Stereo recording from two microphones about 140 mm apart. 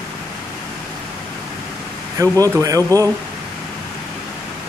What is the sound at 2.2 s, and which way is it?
Speech, 25° right (ahead or behind).